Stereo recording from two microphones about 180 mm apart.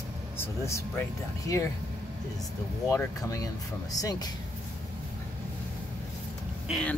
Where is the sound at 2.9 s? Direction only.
15° left (ahead or behind).